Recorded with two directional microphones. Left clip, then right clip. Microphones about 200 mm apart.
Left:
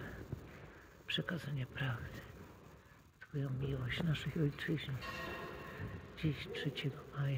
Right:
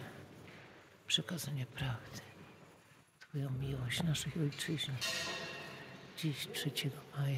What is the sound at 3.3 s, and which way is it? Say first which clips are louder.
Speech: left 1 dB; 35° right (ahead or behind).